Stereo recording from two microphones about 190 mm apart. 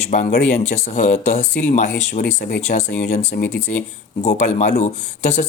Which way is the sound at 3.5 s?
60° left (ahead or behind).